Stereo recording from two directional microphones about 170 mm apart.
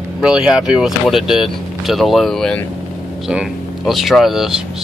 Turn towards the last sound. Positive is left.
turn(degrees=0)  # may be behind; listen again after turning